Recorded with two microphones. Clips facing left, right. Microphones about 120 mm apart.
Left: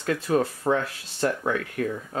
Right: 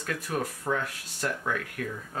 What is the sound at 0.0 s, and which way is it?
Speech, 25° left (ahead or behind).